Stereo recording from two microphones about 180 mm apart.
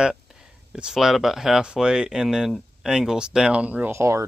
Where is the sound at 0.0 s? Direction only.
5° right (ahead or behind).